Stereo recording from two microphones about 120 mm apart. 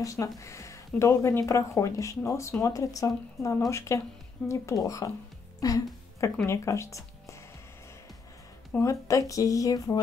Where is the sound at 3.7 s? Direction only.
25° left (ahead or behind).